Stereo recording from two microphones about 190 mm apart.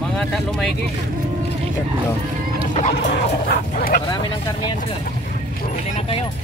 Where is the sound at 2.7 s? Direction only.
35° left (ahead or behind).